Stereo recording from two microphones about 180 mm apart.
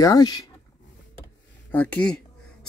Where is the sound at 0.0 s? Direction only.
20° left (ahead or behind).